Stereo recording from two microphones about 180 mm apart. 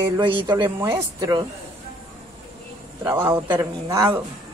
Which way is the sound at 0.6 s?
15° right (ahead or behind).